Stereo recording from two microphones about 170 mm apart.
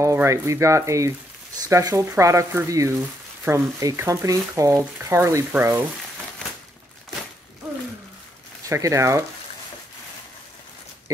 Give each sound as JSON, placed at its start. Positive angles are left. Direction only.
{"t": 0.0, "sound": "speech", "side_deg": -15}
{"t": 8.6, "sound": "speech", "side_deg": -20}